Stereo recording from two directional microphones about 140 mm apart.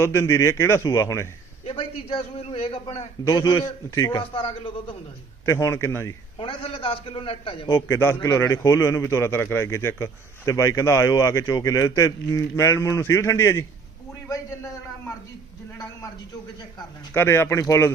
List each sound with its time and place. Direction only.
0.0 s a man's voice: 20° left (ahead or behind)
1.6 s a man's voice: 45° left (ahead or behind)
3.2 s a man's voice: 25° left (ahead or behind)
4.2 s a man's voice: 35° left (ahead or behind)
5.5 s a man's voice: 20° left (ahead or behind)
6.4 s a man's voice: 40° left (ahead or behind)
7.7 s a man's voice: 20° left (ahead or behind)
17.2 s speech: 15° left (ahead or behind)